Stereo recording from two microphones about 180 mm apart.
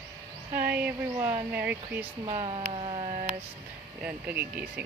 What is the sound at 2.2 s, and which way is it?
Speech, 35° right (ahead or behind).